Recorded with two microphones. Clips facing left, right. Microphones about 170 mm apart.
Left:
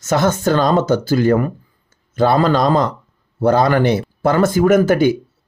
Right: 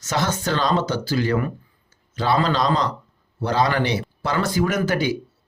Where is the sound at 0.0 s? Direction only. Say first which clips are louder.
Left 8 dB; 50° left (ahead or behind).